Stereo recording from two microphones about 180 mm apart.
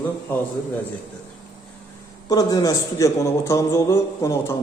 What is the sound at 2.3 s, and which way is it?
A man's voice, 20° left (ahead or behind).